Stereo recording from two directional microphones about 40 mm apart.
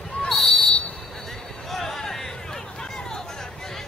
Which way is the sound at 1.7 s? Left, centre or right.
Centre.